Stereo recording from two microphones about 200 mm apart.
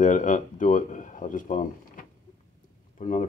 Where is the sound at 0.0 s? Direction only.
40° left (ahead or behind).